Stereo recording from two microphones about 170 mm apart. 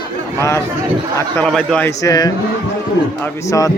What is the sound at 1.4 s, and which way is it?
Speech, 5° left (ahead or behind).